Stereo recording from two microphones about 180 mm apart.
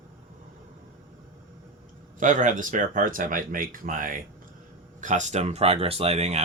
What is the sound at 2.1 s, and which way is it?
Speech, 45° right (ahead or behind).